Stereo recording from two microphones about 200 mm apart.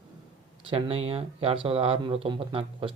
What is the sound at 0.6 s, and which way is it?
A man's voice, 30° right (ahead or behind).